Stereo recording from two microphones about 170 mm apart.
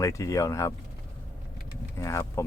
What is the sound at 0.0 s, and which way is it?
Speech, 20° left (ahead or behind).